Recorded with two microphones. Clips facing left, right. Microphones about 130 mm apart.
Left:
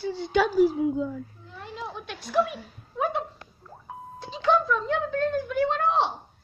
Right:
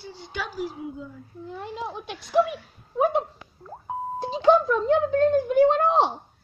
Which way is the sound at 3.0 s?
35° right (ahead or behind).